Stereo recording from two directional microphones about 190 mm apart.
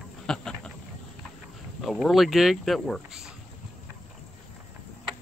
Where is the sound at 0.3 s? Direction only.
5° left (ahead or behind).